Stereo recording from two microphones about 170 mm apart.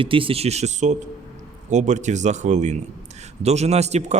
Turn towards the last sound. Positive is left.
turn(degrees=-40)  # may be behind; listen again after turning